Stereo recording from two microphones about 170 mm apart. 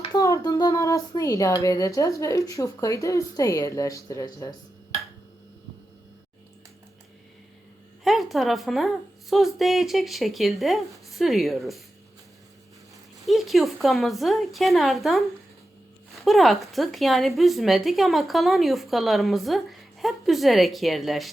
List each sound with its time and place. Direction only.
0.0 s speech: 20° left (ahead or behind)
8.0 s a woman's voice: centre (ahead or behind)
13.2 s a woman's voice: centre (ahead or behind)